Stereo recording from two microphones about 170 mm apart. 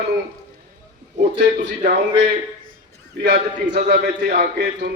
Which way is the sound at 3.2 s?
65° right (ahead or behind).